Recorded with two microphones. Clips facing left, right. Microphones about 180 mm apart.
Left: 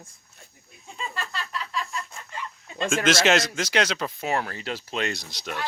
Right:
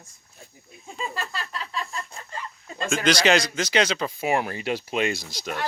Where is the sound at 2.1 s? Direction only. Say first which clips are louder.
Right 1 dB; 40° right (ahead or behind).